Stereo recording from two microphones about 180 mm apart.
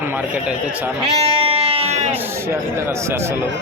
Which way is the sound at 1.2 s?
30° right (ahead or behind).